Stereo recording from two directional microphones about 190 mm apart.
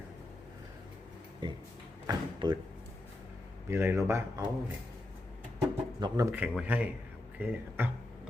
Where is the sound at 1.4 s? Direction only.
25° right (ahead or behind).